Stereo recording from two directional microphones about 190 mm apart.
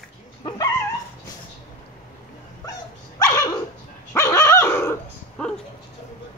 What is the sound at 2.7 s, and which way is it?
Dog, 20° left (ahead or behind).